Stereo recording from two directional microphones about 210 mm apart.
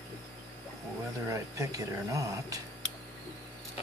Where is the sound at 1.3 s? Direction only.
15° right (ahead or behind).